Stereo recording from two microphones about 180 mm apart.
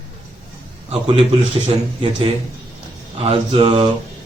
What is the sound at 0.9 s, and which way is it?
A man's voice, 30° right (ahead or behind).